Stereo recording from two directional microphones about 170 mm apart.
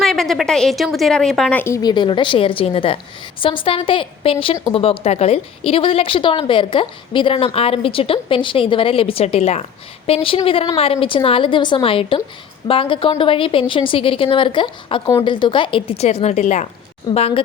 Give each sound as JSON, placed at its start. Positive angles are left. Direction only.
{"t": 0.0, "sound": "a woman's voice", "side_deg": 0}
{"t": 17.1, "sound": "a woman's voice", "side_deg": 35}